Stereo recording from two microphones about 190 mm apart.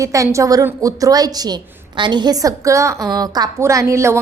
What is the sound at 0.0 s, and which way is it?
A woman's voice, 15° right (ahead or behind).